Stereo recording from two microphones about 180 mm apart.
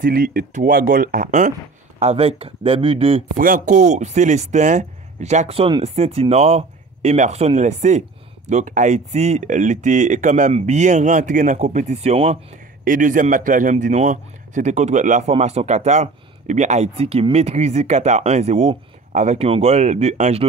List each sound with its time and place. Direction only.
0.0 s speech: 50° right (ahead or behind)
2.0 s a man's voice: 35° right (ahead or behind)
3.3 s a man's voice: 50° right (ahead or behind)
12.8 s a man's voice: 45° right (ahead or behind)